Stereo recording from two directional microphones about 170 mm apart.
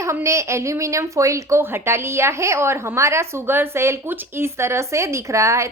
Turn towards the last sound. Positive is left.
turn(degrees=-15)  # may be behind; listen again after turning